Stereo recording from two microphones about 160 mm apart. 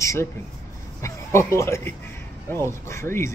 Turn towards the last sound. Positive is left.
turn(degrees=15)  # may be behind; listen again after turning